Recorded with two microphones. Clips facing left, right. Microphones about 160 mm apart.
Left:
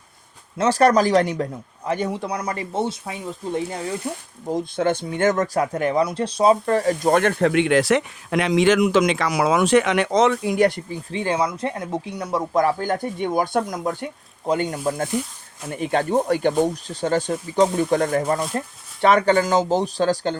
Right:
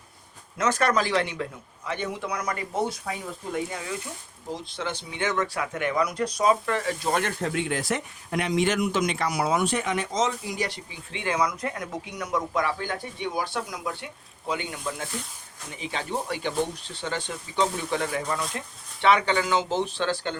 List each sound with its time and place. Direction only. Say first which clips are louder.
0.5 s a man's voice: left 7 dB; 30° left (ahead or behind)